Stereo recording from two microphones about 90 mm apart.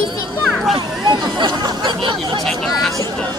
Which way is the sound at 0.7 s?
55° right (ahead or behind).